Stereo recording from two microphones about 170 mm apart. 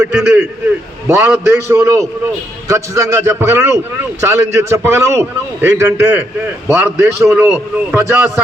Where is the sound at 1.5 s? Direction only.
15° right (ahead or behind).